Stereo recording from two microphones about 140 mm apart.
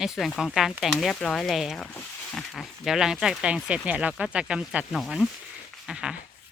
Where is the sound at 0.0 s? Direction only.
Centre (ahead or behind).